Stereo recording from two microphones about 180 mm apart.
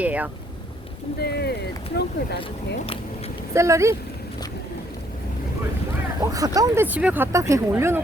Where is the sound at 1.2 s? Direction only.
65° left (ahead or behind).